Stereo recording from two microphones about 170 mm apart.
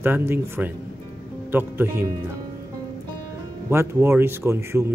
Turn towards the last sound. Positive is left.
turn(degrees=-15)  # may be behind; listen again after turning